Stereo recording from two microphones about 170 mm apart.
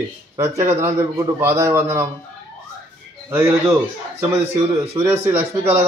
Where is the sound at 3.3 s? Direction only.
10° right (ahead or behind).